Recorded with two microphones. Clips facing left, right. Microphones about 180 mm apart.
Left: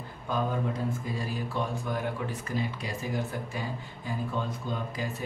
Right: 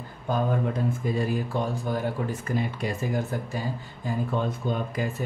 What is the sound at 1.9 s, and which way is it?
Speech, 45° right (ahead or behind).